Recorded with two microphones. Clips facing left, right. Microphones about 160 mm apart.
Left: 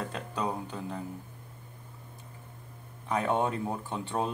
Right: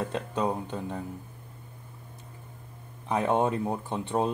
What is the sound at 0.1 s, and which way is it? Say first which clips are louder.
Speech: right 4 dB; 25° right (ahead or behind).